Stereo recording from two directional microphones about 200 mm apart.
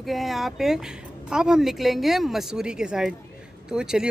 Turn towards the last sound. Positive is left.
turn(degrees=-5)  # may be behind; listen again after turning